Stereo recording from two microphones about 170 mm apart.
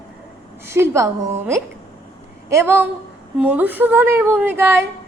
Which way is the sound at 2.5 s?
15° right (ahead or behind).